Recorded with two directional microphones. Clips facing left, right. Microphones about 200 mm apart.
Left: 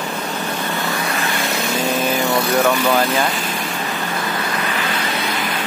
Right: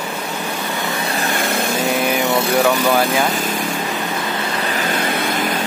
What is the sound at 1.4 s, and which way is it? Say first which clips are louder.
Vehicle: right 2 dB; 55° right (ahead or behind).